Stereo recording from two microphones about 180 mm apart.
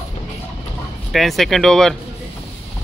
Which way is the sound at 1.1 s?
Centre (ahead or behind).